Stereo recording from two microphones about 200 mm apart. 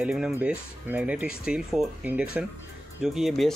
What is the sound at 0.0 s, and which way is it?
Speech, 5° right (ahead or behind).